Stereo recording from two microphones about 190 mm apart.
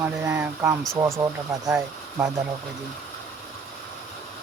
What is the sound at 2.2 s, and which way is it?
Speech, 15° right (ahead or behind).